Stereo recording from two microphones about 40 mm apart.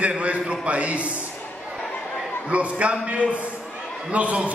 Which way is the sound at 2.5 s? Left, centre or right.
Right.